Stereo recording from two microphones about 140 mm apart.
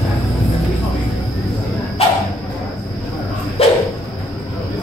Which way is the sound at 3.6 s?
45° left (ahead or behind).